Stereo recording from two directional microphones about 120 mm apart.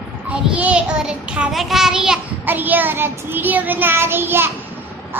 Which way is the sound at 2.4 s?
15° right (ahead or behind).